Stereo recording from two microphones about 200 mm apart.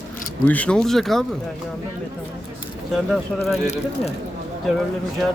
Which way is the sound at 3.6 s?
35° left (ahead or behind).